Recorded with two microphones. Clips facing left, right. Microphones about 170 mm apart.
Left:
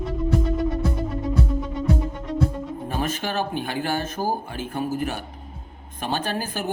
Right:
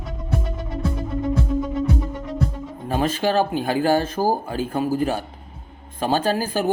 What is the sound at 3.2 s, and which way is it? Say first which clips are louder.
Speech: right 6 dB; 35° right (ahead or behind).